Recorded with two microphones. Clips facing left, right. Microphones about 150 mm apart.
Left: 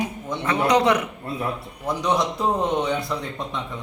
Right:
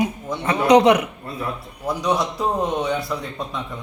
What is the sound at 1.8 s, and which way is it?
A man's voice, 5° right (ahead or behind).